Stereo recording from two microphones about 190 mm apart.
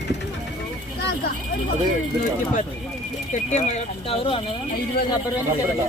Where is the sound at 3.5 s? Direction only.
35° left (ahead or behind).